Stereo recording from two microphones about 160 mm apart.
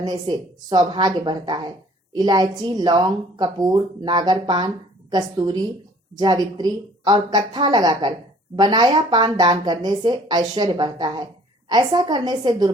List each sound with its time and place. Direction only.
0.0 s speech: 25° right (ahead or behind)